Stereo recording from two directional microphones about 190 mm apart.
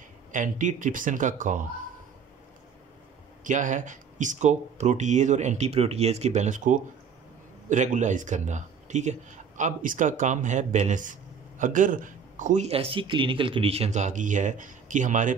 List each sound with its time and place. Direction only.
0.3 s speech: 40° right (ahead or behind)
3.4 s speech: 40° right (ahead or behind)